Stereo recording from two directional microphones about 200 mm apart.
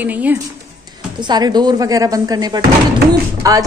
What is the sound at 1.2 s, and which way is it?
A woman's voice, 20° right (ahead or behind).